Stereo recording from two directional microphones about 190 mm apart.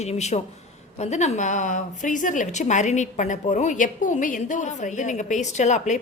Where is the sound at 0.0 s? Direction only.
35° left (ahead or behind).